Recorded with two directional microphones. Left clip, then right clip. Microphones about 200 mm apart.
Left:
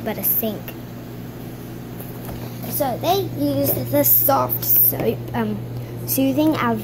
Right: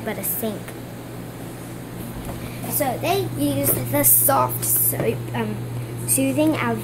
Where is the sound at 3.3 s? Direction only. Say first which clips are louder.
Left 2 dB; centre (ahead or behind).